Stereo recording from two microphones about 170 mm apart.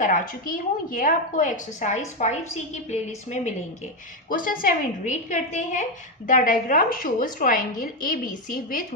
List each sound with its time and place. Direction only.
0.0 s a woman's voice: 50° left (ahead or behind)
4.3 s a woman's voice: 55° left (ahead or behind)